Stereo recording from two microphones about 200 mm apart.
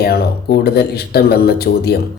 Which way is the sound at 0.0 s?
50° left (ahead or behind).